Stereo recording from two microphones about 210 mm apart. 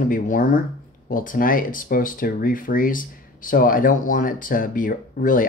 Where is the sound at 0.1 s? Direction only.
40° left (ahead or behind).